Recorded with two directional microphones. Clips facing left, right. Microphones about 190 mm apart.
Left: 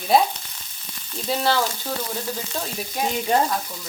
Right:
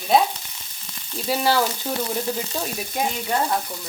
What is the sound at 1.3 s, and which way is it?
Frying, 10° right (ahead or behind).